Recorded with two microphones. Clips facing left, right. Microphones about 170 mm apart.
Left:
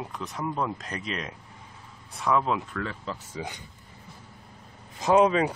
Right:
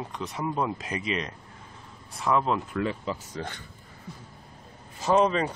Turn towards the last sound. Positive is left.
turn(degrees=10)  # may be behind; listen again after turning